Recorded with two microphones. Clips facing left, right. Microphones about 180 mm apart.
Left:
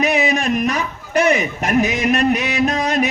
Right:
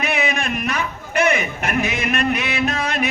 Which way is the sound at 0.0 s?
40° left (ahead or behind).